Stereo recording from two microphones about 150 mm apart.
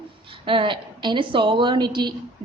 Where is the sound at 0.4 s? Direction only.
35° right (ahead or behind).